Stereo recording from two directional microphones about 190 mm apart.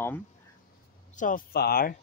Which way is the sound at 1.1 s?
45° left (ahead or behind).